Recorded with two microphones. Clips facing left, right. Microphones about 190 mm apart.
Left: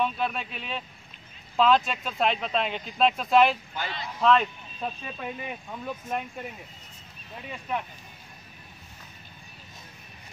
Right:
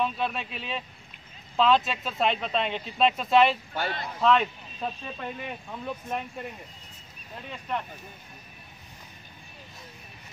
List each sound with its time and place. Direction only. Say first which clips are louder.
0.0 s speech: left 1 dB; centre (ahead or behind)
3.7 s speech: right 3 dB; 50° right (ahead or behind)
4.2 s speech: left 1 dB; centre (ahead or behind)